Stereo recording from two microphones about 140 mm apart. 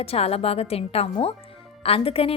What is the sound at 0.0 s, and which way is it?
A woman's voice, 45° left (ahead or behind).